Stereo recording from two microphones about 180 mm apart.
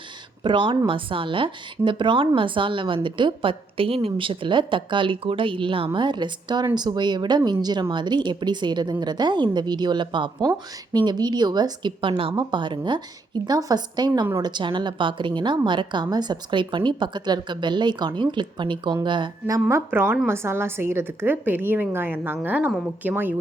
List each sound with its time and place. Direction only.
0.4 s a woman's voice: 25° right (ahead or behind); by 23.3 s 10° right (ahead or behind)